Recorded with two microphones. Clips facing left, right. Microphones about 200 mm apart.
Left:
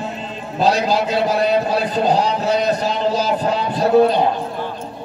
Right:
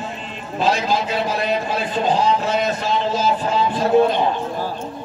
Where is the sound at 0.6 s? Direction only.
35° left (ahead or behind).